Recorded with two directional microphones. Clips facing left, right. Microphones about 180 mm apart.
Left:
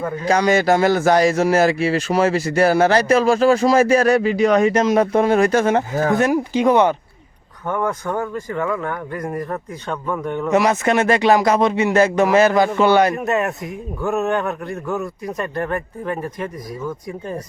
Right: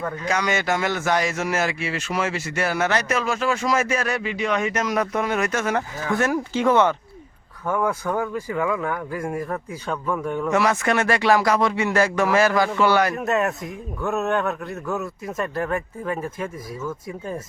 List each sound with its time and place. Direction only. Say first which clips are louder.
0.3 s speech: left 8 dB; 35° left (ahead or behind)
5.9 s speech: left 8 dB; 50° left (ahead or behind)
6.1 s speech: left 1 dB; 15° left (ahead or behind)
7.7 s speech: left 1 dB; 10° right (ahead or behind)
10.5 s speech: left 5 dB; 20° left (ahead or behind)
13.1 s speech: left 2 dB; centre (ahead or behind)